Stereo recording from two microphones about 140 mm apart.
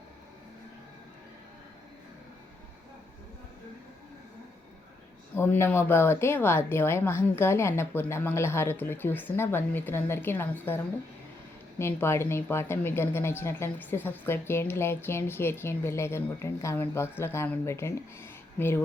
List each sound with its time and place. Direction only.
5.4 s a woman's voice: 15° left (ahead or behind)